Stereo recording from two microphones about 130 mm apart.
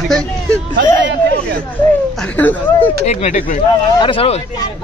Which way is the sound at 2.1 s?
10° left (ahead or behind).